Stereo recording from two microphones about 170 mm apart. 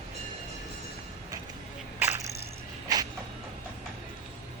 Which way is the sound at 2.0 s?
15° right (ahead or behind).